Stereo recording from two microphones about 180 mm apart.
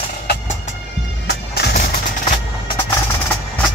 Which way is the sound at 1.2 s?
65° left (ahead or behind).